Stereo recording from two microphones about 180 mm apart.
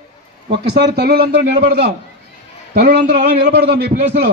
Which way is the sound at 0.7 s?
65° right (ahead or behind).